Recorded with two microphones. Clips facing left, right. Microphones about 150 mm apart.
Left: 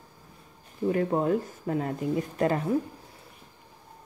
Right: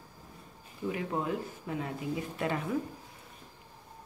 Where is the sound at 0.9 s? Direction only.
45° left (ahead or behind).